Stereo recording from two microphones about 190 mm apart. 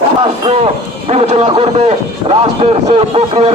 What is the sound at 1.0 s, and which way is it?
A man's voice, 35° right (ahead or behind).